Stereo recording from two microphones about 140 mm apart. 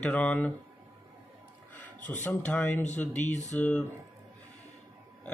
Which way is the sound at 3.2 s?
60° left (ahead or behind).